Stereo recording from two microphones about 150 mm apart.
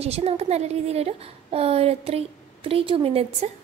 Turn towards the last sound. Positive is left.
turn(degrees=-40)  # may be behind; listen again after turning